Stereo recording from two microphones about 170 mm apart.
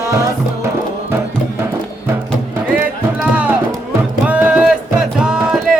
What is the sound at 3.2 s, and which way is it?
Music, 5° right (ahead or behind).